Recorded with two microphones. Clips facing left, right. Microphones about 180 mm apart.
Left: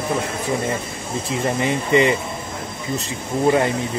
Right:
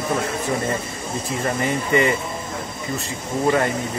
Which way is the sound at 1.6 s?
20° left (ahead or behind).